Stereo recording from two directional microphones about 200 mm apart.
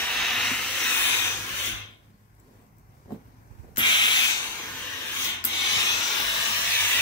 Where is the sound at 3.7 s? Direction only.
25° left (ahead or behind).